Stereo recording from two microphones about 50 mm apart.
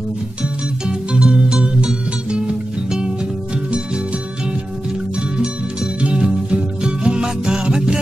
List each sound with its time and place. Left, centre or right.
0.4 s music: centre
5.9 s music: right